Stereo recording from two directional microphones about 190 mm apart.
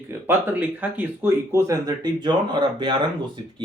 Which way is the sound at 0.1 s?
10° right (ahead or behind).